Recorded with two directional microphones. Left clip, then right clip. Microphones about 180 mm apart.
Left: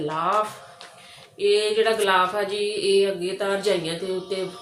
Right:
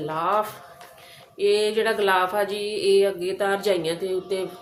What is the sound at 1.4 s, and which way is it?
Music, 35° right (ahead or behind).